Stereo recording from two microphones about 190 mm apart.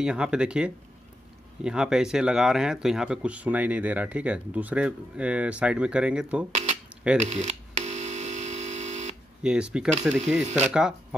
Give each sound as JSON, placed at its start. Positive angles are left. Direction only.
{"t": 0.0, "sound": "speech", "side_deg": -5}
{"t": 6.5, "sound": "a sound", "side_deg": -35}
{"t": 7.2, "sound": "telephone", "side_deg": -35}
{"t": 9.4, "sound": "speech", "side_deg": -5}